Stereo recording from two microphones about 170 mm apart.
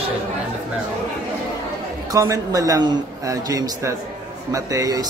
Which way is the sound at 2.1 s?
20° right (ahead or behind).